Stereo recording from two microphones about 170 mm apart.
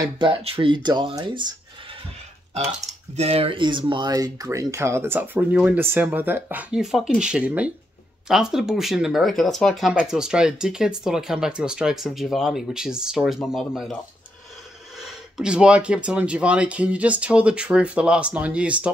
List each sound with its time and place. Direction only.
0.0 s speech: 30° right (ahead or behind)
3.2 s speech: 35° right (ahead or behind); by 13.9 s centre (ahead or behind)
15.0 s speech: centre (ahead or behind)